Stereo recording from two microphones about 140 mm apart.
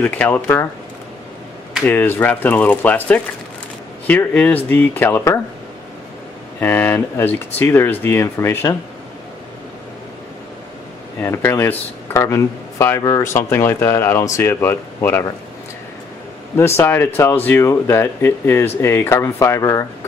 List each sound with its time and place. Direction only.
0.0 s speech: 10° left (ahead or behind)
1.9 s speech: 15° left (ahead or behind)
6.6 s speech: 15° left (ahead or behind)
11.1 s speech: 15° left (ahead or behind)
16.5 s speech: 20° left (ahead or behind)